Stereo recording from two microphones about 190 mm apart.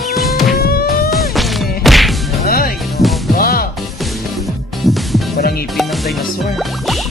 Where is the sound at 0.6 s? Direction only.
55° left (ahead or behind).